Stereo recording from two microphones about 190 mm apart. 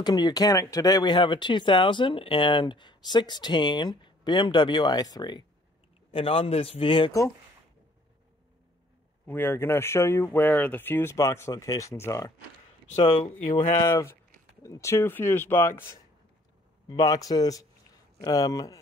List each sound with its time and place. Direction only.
0.0 s speech: 20° left (ahead or behind)
7.1 s speech: 15° left (ahead or behind)
9.3 s speech: 10° left (ahead or behind)